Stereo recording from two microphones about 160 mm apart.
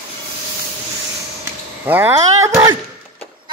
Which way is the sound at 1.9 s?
15° right (ahead or behind).